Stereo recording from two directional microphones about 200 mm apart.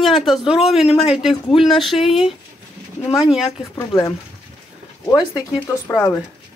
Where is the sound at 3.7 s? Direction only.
15° left (ahead or behind).